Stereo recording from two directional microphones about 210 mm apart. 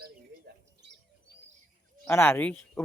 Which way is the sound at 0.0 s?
50° right (ahead or behind).